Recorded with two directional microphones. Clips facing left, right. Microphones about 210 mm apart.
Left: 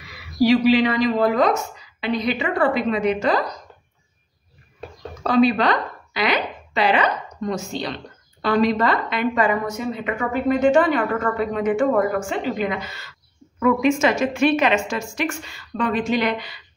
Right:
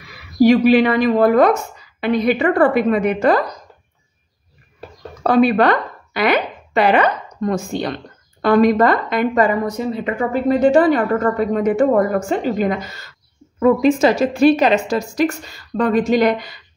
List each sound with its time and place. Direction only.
0.4 s a woman's voice: 50° right (ahead or behind)
5.2 s speech: 55° right (ahead or behind)